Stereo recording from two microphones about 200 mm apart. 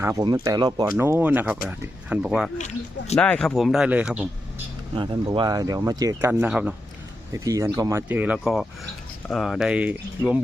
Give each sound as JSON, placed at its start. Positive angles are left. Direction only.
{"t": 0.0, "sound": "speech", "side_deg": -15}
{"t": 2.6, "sound": "speech", "side_deg": 35}
{"t": 3.2, "sound": "speech", "side_deg": 5}
{"t": 4.9, "sound": "speech", "side_deg": -25}